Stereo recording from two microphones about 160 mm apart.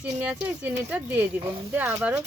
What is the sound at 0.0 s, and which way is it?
Speech, 10° right (ahead or behind).